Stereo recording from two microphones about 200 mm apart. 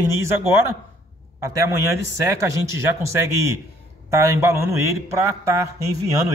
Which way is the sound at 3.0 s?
15° right (ahead or behind).